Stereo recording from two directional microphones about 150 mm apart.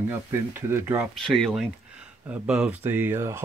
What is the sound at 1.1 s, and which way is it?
Speech, centre (ahead or behind).